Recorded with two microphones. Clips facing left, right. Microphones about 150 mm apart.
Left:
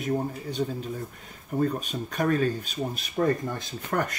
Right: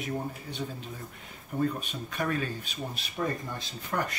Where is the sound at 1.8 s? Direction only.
40° left (ahead or behind).